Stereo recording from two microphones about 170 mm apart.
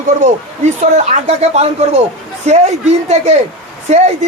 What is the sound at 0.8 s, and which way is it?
Speech, 40° right (ahead or behind).